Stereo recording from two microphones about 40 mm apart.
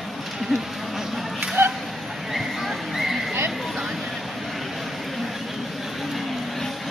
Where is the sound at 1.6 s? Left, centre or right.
Right.